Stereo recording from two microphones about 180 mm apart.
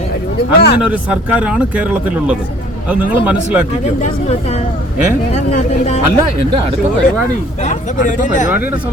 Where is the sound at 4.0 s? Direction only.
40° left (ahead or behind).